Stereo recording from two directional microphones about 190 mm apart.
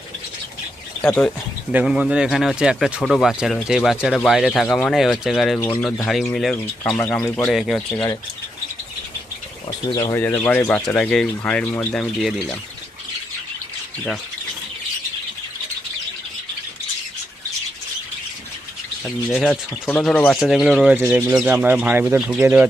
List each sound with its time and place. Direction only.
1.0 s speech: 5° left (ahead or behind)
1.7 s speech: 5° right (ahead or behind)
5.5 s speech: 10° left (ahead or behind)
9.6 s speech: 20° left (ahead or behind)
19.0 s speech: 5° left (ahead or behind)